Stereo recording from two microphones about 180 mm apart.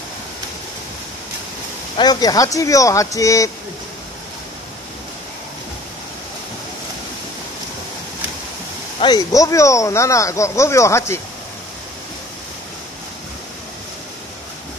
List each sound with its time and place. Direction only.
2.0 s speech: 20° left (ahead or behind)
9.0 s speech: 20° left (ahead or behind)